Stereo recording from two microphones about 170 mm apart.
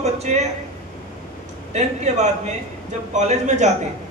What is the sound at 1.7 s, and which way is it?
A man's voice, 40° right (ahead or behind).